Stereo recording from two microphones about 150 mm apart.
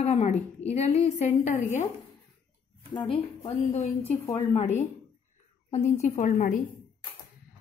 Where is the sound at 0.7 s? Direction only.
45° left (ahead or behind).